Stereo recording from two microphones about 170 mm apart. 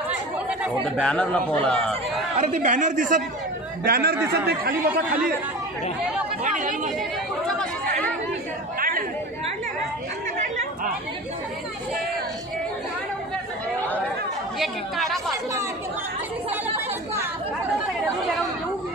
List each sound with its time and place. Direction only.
1.0 s a man's voice: 5° left (ahead or behind)
2.3 s a man's voice: 40° right (ahead or behind)
3.8 s speech: 65° right (ahead or behind)
6.4 s speech: 50° right (ahead or behind)
8.7 s chatter: 55° right (ahead or behind)
14.6 s chatter: centre (ahead or behind)
16.4 s chatter: 10° right (ahead or behind)